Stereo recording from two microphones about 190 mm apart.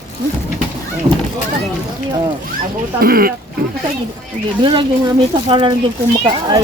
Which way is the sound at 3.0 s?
50° right (ahead or behind).